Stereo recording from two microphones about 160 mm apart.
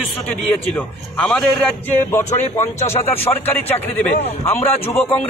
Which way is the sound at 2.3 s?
45° left (ahead or behind).